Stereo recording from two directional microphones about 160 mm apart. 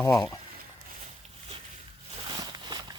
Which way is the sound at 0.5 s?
65° right (ahead or behind).